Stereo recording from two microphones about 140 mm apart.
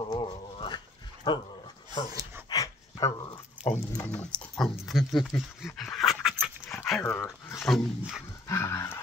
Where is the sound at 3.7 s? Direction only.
25° left (ahead or behind).